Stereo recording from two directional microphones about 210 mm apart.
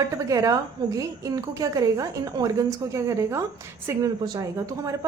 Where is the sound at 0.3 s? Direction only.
15° right (ahead or behind).